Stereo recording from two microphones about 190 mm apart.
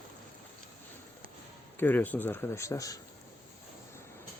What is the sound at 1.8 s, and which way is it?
Speech, 10° left (ahead or behind).